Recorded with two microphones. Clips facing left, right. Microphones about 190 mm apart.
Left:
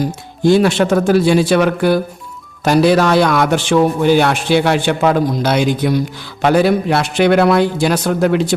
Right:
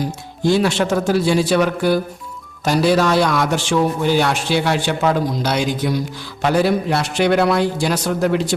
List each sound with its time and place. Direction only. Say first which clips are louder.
0.4 s a man's voice: left 5 dB; 55° left (ahead or behind)